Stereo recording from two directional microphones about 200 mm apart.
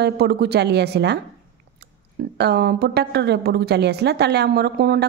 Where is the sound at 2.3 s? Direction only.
55° right (ahead or behind).